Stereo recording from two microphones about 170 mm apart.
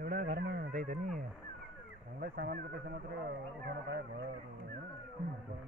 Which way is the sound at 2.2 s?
65° right (ahead or behind).